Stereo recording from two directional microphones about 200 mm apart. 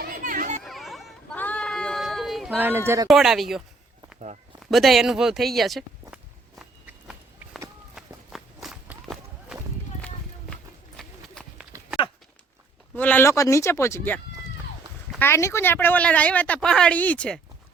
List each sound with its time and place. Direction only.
0.0 s children playing: 45° right (ahead or behind)
0.6 s a sound: centre (ahead or behind)
3.1 s speech: centre (ahead or behind)
4.7 s speech: centre (ahead or behind)
7.9 s run: centre (ahead or behind)
12.9 s a woman's voice: 10° left (ahead or behind)
15.2 s a woman's voice: 15° left (ahead or behind)